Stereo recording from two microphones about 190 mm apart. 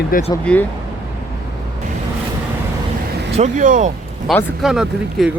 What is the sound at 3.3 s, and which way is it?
Speech, 40° right (ahead or behind).